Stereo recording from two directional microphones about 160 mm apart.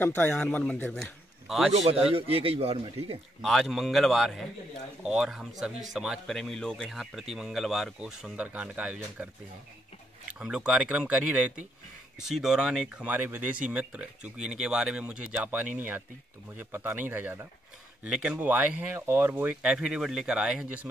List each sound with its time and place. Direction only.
0.0 s a man's voice: 10° left (ahead or behind)
1.7 s a man's voice: 40° right (ahead or behind)
3.4 s speech: centre (ahead or behind)
10.4 s speech: 5° right (ahead or behind)